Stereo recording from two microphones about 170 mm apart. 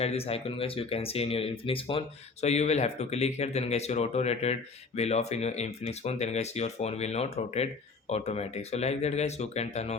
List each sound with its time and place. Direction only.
0.0 s speech: 35° left (ahead or behind)